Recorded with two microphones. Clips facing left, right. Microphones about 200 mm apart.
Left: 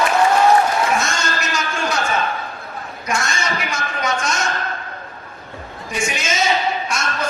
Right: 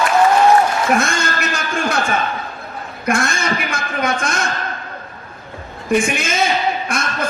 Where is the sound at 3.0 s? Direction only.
55° right (ahead or behind).